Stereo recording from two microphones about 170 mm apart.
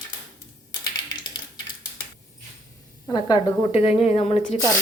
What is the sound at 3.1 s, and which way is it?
A woman's voice, 25° left (ahead or behind).